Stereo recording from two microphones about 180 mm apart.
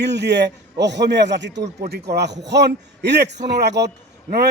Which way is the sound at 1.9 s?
65° right (ahead or behind).